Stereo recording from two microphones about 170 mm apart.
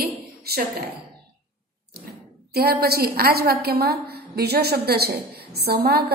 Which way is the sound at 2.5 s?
65° right (ahead or behind).